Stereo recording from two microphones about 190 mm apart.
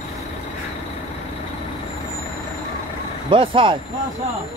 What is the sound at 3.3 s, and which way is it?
Speech, 25° right (ahead or behind).